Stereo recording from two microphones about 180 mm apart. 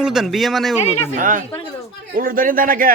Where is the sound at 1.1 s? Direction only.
50° right (ahead or behind).